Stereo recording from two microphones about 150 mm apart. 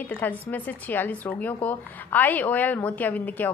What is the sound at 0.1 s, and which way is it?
Speech, 15° left (ahead or behind).